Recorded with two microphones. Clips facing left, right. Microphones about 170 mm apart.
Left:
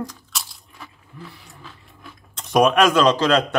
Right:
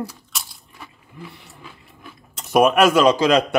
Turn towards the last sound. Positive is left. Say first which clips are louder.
# right 2 dB
turn(degrees=-10)  # may be behind; listen again after turning